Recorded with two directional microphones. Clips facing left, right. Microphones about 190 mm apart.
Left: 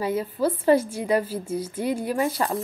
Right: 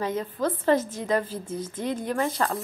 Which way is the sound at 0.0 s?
10° left (ahead or behind).